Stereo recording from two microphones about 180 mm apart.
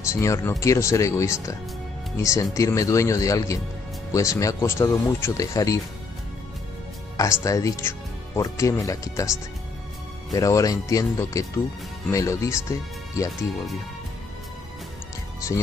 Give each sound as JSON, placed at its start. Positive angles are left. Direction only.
{"t": 0.1, "sound": "speech", "side_deg": 15}
{"t": 7.2, "sound": "speech", "side_deg": 20}